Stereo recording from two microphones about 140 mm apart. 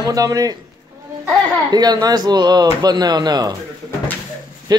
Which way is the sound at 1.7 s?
30° right (ahead or behind).